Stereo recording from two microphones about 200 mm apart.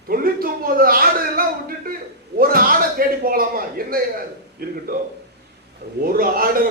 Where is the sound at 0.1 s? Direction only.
45° right (ahead or behind).